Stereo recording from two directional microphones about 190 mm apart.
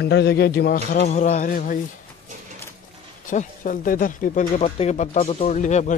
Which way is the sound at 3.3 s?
45° left (ahead or behind).